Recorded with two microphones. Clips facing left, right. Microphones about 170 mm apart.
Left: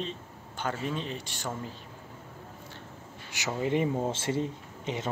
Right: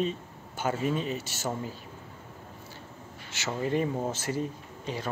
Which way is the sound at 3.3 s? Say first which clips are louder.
Even; 15° left (ahead or behind).